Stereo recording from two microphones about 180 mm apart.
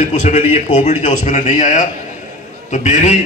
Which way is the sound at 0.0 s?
40° left (ahead or behind).